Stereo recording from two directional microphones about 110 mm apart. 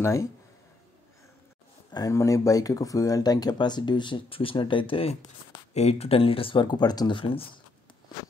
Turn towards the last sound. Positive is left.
turn(degrees=55)  # may be behind; listen again after turning